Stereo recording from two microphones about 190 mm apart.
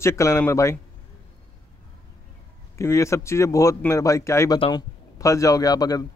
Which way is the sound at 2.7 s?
15° left (ahead or behind).